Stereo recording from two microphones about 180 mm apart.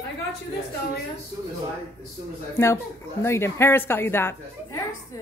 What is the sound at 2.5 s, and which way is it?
A woman's voice, 15° left (ahead or behind).